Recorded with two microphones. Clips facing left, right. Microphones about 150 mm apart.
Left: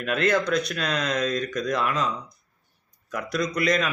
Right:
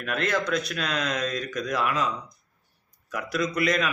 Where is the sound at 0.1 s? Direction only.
Centre (ahead or behind).